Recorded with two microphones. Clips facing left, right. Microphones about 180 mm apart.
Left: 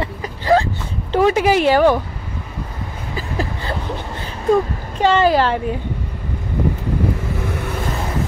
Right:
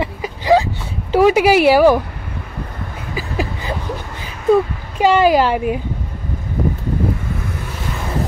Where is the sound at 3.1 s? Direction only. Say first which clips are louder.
Right 2 dB; 10° right (ahead or behind).